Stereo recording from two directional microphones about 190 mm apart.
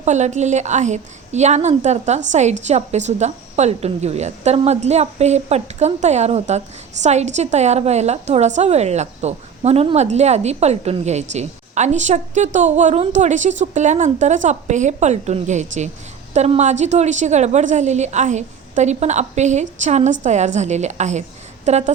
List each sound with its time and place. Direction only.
0.0 s a woman's voice: 40° right (ahead or behind)